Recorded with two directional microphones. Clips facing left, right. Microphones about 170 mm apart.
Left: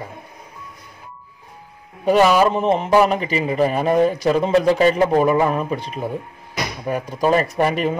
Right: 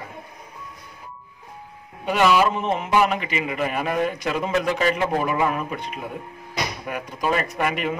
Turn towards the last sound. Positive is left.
turn(degrees=35)  # may be behind; listen again after turning